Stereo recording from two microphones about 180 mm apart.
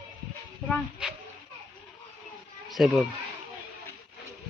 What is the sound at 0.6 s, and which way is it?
Speech, centre (ahead or behind).